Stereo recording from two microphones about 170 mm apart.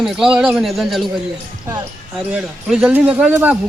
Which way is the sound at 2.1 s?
5° right (ahead or behind).